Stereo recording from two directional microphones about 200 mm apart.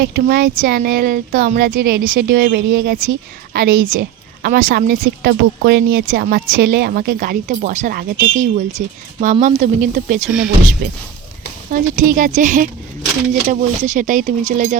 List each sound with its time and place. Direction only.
0.0 s speech: 50° right (ahead or behind)
10.2 s speech: 5° right (ahead or behind)
11.7 s speech: 40° right (ahead or behind)